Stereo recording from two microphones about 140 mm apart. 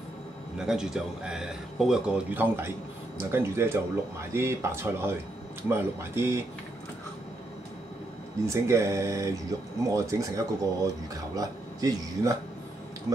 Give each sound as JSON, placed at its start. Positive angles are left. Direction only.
{"t": 0.6, "sound": "a man's voice", "side_deg": -5}
{"t": 8.5, "sound": "speech", "side_deg": -20}